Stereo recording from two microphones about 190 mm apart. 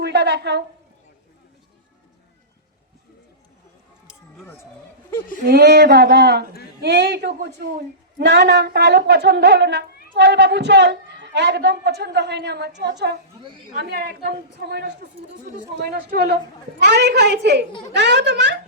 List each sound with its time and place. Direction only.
0.0 s a woman's voice: 65° right (ahead or behind)
4.0 s a sound: 5° right (ahead or behind)
5.5 s a woman's voice: 60° right (ahead or behind)
17.7 s a child's voice: 25° left (ahead or behind)
17.9 s a child's voice: 65° right (ahead or behind)